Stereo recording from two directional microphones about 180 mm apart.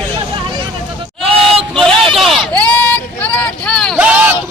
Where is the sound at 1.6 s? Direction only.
5° left (ahead or behind).